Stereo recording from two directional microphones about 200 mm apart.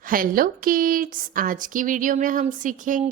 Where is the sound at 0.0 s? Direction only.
45° right (ahead or behind).